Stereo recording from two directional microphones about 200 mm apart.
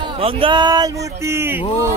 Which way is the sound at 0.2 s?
25° right (ahead or behind).